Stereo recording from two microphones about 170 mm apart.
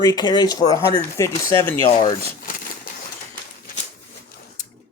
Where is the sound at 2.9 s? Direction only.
60° left (ahead or behind).